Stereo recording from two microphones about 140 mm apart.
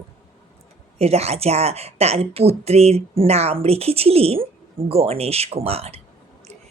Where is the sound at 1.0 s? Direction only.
50° right (ahead or behind).